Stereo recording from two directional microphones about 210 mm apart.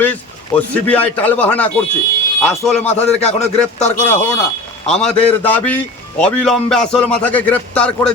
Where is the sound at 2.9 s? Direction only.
30° left (ahead or behind).